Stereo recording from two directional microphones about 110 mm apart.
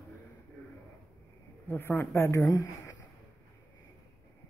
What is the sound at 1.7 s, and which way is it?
Speech, 20° left (ahead or behind).